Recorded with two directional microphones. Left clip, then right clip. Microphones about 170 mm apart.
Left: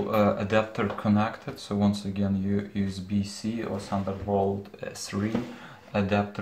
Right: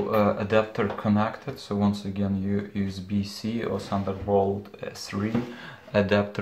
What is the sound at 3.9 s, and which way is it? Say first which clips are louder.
Speech: left 2 dB; 15° right (ahead or behind).